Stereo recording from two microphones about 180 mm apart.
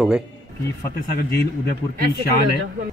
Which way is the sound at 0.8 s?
55° left (ahead or behind).